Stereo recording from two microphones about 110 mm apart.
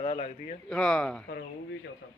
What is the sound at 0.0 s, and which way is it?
Speech, 70° left (ahead or behind).